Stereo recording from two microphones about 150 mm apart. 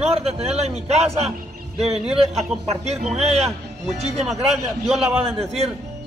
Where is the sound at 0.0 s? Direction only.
45° right (ahead or behind).